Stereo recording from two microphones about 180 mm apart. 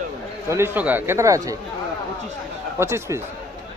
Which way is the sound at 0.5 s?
10° right (ahead or behind).